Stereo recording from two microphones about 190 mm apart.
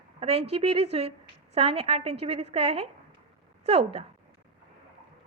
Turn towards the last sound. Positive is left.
turn(degrees=-30)  # may be behind; listen again after turning